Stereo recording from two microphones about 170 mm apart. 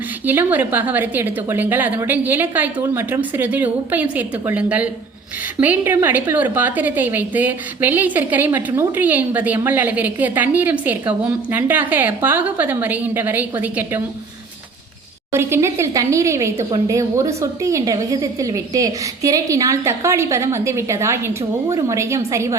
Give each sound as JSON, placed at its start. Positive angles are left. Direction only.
{"t": 0.3, "sound": "speech", "side_deg": -10}
{"t": 15.3, "sound": "speech", "side_deg": -15}